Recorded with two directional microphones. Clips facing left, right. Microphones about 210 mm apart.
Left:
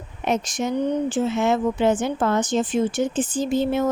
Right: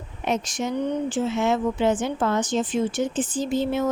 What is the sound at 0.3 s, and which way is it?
Speech, 45° left (ahead or behind).